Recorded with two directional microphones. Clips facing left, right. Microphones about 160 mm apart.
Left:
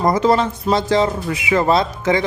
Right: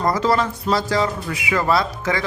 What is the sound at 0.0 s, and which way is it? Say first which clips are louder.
A man's voice: left 4 dB; 20° left (ahead or behind).